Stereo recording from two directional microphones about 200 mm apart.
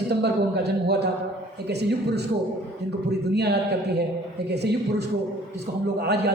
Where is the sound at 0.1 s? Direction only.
55° right (ahead or behind).